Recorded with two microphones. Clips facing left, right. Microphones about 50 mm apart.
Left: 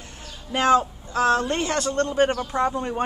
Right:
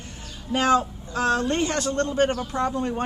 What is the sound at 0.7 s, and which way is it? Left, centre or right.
Speech, centre.